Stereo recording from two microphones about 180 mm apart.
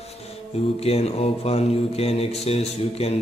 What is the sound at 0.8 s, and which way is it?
Speech, 35° left (ahead or behind).